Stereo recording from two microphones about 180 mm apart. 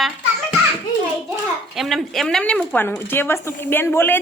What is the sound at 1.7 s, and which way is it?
A woman's voice, centre (ahead or behind).